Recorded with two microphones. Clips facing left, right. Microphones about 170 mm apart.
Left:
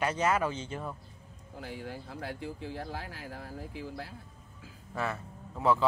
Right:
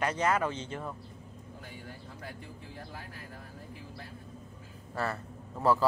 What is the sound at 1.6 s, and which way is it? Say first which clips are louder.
Speech: left 9 dB; 90° left.